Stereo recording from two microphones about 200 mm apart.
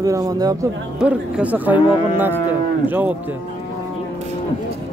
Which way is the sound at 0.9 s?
5° right (ahead or behind).